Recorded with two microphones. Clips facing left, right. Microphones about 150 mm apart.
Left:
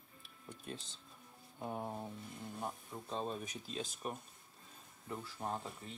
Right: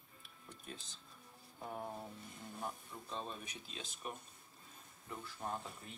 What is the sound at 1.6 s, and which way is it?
Speech, 25° left (ahead or behind).